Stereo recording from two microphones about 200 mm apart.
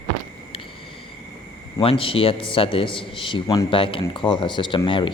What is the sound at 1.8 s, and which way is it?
A man's voice, 30° left (ahead or behind).